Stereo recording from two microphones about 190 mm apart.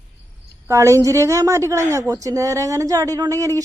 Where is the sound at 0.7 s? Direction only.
15° right (ahead or behind).